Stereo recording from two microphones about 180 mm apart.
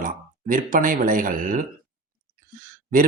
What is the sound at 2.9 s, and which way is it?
Speech, 50° right (ahead or behind).